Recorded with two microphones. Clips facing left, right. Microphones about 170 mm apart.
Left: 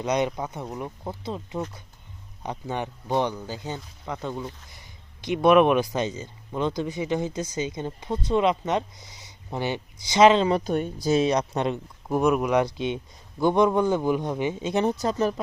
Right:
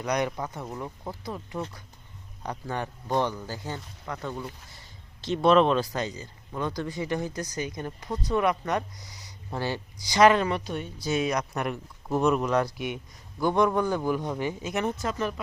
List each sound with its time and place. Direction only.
0.0 s speech: 20° left (ahead or behind)
10.5 s a woman's voice: 45° left (ahead or behind)
11.1 s speech: 30° left (ahead or behind)